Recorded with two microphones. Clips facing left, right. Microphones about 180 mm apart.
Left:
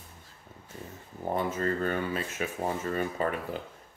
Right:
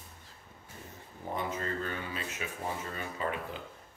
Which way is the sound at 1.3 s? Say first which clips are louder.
Left 6 dB; 45° left (ahead or behind).